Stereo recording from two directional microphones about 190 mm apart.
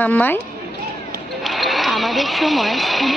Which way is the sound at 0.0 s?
10° left (ahead or behind).